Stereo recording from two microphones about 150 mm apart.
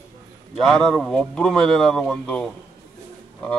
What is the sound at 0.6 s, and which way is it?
A man's voice, 5° left (ahead or behind).